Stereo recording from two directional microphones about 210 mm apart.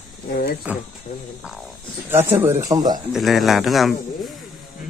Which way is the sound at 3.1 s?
Centre (ahead or behind).